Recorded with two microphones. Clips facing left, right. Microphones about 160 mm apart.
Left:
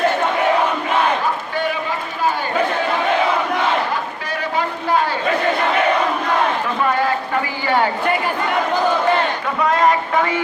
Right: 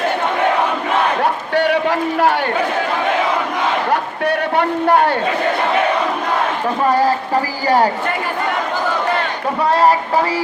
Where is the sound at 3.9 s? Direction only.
65° right (ahead or behind).